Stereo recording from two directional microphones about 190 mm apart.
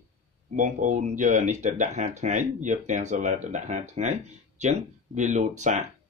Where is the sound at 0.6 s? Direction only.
40° right (ahead or behind).